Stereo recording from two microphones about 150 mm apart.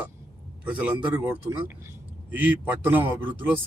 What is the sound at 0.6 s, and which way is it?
Speech, 10° right (ahead or behind).